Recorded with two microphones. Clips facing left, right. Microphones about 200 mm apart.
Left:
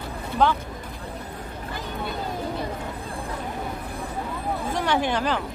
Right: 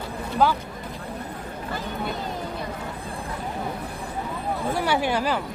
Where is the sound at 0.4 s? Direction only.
5° right (ahead or behind).